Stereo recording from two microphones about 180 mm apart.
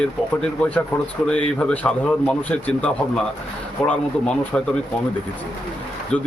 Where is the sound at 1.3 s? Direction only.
10° left (ahead or behind).